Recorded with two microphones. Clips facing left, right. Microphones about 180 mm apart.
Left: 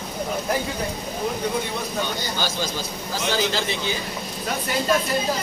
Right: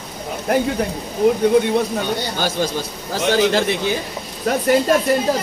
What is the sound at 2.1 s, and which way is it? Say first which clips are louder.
Speech: right 6 dB; 55° right (ahead or behind).